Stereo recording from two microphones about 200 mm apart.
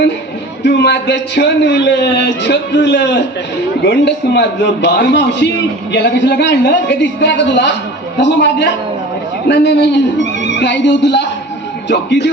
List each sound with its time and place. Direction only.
0.6 s a man's voice: 55° left (ahead or behind)